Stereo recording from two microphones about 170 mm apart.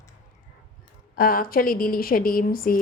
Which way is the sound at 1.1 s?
55° left (ahead or behind).